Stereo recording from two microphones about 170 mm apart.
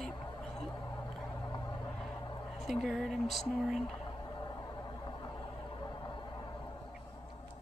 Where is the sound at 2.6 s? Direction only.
Centre (ahead or behind).